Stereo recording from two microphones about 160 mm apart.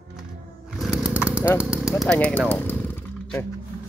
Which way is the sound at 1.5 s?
5° right (ahead or behind).